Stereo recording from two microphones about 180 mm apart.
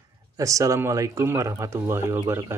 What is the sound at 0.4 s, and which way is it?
Speech, 15° right (ahead or behind).